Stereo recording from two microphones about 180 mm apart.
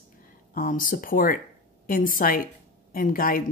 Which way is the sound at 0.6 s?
50° left (ahead or behind).